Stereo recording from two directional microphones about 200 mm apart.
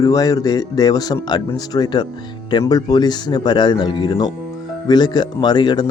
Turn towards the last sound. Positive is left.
turn(degrees=20)  # may be behind; listen again after turning